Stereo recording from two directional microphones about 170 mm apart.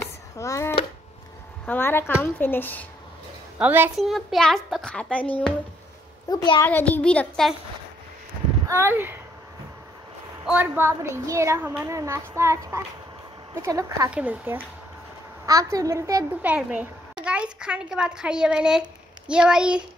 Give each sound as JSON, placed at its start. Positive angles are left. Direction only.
{"t": 0.0, "sound": "a sound", "side_deg": 15}
{"t": 1.7, "sound": "a child's voice", "side_deg": 15}
{"t": 3.5, "sound": "a child's voice", "side_deg": -10}
{"t": 4.0, "sound": "speech", "side_deg": 0}
{"t": 6.3, "sound": "a woman's voice", "side_deg": 25}
{"t": 6.6, "sound": "a child's voice", "side_deg": 10}
{"t": 8.6, "sound": "speech", "side_deg": -15}
{"t": 10.4, "sound": "a child's voice", "side_deg": -10}